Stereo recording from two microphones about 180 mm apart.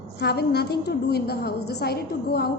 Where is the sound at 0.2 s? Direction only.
65° left (ahead or behind).